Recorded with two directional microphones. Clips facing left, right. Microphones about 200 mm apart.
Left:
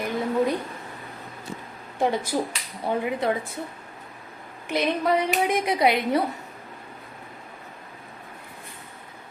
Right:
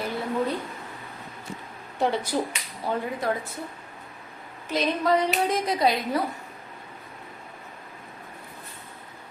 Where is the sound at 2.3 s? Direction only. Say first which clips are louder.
Left 1 dB; 10° left (ahead or behind).